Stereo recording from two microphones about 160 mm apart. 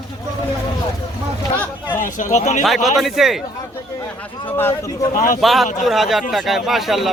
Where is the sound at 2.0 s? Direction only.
50° left (ahead or behind).